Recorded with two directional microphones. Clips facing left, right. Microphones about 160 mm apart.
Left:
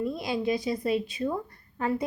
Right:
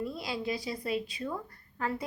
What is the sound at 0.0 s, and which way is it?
A woman's voice, 20° left (ahead or behind).